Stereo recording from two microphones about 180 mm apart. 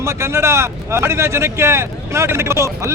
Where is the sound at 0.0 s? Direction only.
15° right (ahead or behind).